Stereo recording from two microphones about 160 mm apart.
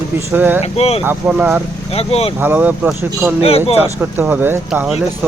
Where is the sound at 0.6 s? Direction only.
40° left (ahead or behind).